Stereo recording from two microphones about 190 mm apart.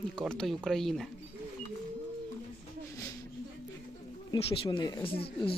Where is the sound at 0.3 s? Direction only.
5° left (ahead or behind).